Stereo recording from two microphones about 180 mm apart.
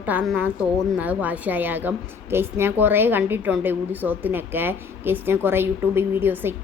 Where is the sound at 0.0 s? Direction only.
10° right (ahead or behind).